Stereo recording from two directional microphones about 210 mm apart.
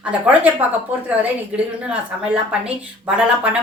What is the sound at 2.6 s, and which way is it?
Speech, 5° right (ahead or behind).